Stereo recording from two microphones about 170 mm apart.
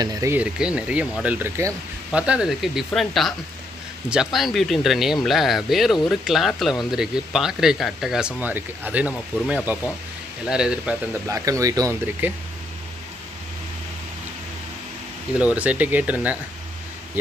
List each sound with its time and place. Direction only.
0.0 s speech: 20° right (ahead or behind)
0.4 s speech: 5° right (ahead or behind)
11.2 s speech: 20° right (ahead or behind)
15.5 s speech: 10° right (ahead or behind)